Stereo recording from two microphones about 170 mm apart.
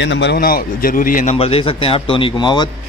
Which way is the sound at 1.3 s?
35° left (ahead or behind).